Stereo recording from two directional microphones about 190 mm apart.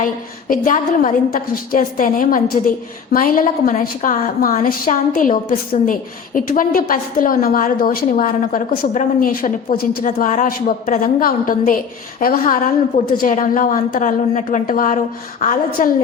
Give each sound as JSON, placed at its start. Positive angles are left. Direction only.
{"t": 0.0, "sound": "a woman's voice", "side_deg": 45}